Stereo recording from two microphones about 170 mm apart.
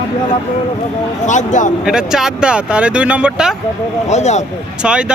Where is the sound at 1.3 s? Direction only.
45° left (ahead or behind).